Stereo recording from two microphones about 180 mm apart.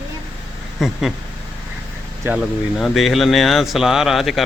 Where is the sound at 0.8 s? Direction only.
Centre (ahead or behind).